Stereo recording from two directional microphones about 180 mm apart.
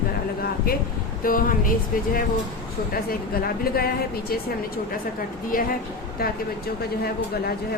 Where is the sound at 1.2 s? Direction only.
50° left (ahead or behind).